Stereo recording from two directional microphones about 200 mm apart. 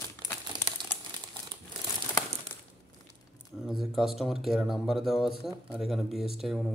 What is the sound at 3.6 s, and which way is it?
Speech, centre (ahead or behind).